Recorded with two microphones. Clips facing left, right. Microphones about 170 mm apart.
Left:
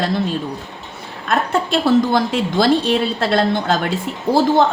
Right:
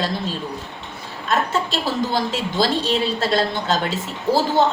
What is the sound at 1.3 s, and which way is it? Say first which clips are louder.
A woman's voice: left 3 dB; 55° left (ahead or behind).